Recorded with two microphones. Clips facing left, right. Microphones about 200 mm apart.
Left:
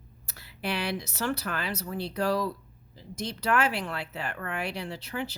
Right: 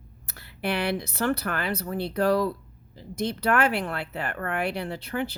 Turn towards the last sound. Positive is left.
turn(degrees=-55)  # may be behind; listen again after turning